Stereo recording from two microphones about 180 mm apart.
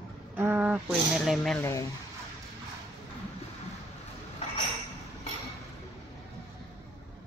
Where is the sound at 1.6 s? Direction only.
15° left (ahead or behind).